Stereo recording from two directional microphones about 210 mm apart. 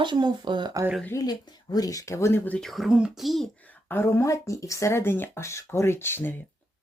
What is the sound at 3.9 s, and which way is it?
Speech, 10° left (ahead or behind).